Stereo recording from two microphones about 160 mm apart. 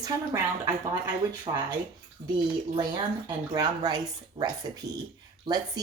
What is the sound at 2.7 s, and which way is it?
A woman's voice, 25° right (ahead or behind).